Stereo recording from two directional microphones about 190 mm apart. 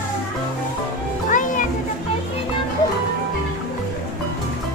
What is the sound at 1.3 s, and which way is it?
Music, 45° left (ahead or behind).